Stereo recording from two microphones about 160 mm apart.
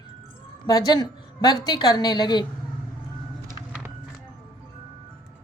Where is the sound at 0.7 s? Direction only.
25° left (ahead or behind).